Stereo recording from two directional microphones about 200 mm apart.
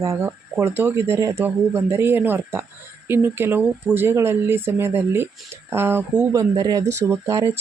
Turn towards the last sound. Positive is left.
turn(degrees=-15)  # may be behind; listen again after turning